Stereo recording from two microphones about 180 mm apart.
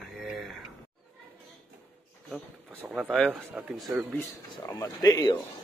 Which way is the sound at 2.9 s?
Centre (ahead or behind).